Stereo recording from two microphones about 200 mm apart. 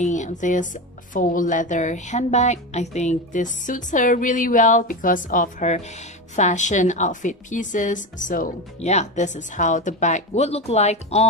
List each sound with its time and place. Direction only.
0.0 s speech: 35° left (ahead or behind)